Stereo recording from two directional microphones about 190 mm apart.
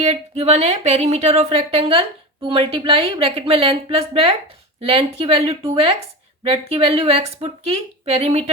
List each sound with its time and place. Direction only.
0.0 s speech: 35° right (ahead or behind)